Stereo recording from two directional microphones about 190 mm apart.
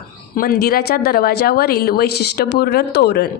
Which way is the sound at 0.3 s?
50° left (ahead or behind).